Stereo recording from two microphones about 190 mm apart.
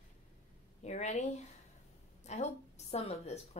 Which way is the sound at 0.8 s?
35° left (ahead or behind).